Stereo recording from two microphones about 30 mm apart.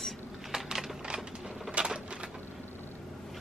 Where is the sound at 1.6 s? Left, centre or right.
Right.